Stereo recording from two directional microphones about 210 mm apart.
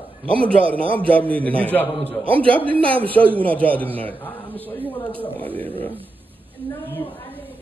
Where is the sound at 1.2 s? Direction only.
5° left (ahead or behind).